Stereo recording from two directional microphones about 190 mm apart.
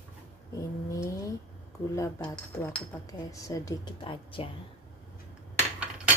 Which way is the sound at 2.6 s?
15° left (ahead or behind).